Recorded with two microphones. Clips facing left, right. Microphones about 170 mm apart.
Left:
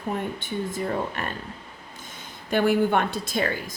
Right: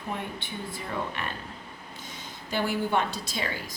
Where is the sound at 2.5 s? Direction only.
55° left (ahead or behind).